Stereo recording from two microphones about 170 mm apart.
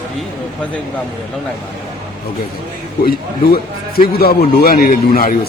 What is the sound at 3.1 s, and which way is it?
A man's voice, 65° left (ahead or behind).